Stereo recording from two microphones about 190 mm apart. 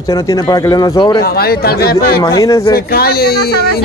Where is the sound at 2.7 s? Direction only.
55° left (ahead or behind).